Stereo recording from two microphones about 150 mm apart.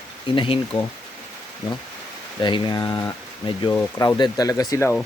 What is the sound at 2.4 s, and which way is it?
Speech, 30° left (ahead or behind).